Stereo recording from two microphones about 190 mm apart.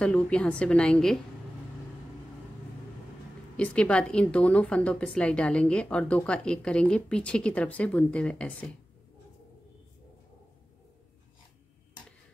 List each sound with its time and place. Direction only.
0.0 s a woman's voice: 5° left (ahead or behind)
3.5 s a woman's voice: 5° left (ahead or behind)